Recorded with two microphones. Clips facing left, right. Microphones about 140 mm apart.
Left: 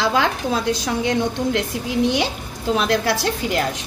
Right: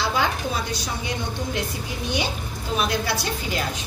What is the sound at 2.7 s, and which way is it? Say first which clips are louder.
Speech: left 5 dB; 90° left.